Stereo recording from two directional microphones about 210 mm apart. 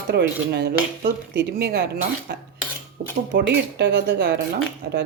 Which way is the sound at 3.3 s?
60° right (ahead or behind).